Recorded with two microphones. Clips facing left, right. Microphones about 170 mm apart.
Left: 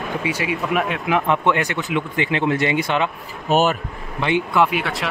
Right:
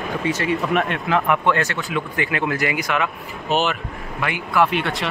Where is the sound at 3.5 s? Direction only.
45° left (ahead or behind).